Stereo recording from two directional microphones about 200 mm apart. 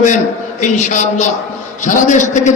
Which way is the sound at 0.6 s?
35° left (ahead or behind).